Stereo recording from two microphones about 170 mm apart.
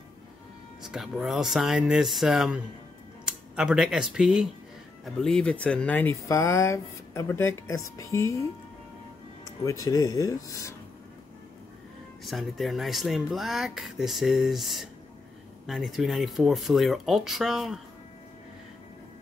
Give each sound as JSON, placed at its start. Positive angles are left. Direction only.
{"t": 0.8, "sound": "speech", "side_deg": -5}
{"t": 12.3, "sound": "speech", "side_deg": 0}